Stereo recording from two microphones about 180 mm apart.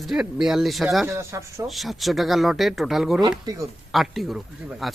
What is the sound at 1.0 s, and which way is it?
Speech, 15° right (ahead or behind).